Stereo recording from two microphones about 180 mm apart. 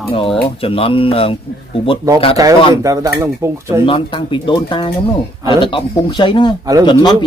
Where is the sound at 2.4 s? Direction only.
20° right (ahead or behind).